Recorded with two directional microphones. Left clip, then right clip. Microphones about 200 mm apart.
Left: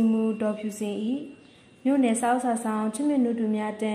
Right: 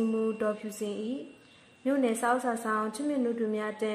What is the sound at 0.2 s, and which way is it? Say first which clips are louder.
Music: left 2 dB; 25° left (ahead or behind).